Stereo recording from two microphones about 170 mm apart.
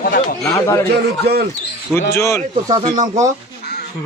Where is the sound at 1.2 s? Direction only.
65° right (ahead or behind).